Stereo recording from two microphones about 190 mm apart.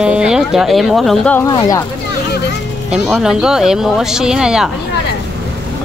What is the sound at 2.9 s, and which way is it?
Speech, 5° right (ahead or behind).